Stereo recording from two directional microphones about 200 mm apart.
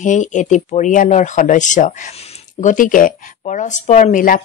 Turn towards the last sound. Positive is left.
turn(degrees=40)  # may be behind; listen again after turning